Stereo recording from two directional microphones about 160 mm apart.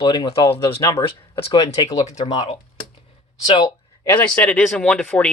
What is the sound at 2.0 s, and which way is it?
Speech, 40° left (ahead or behind).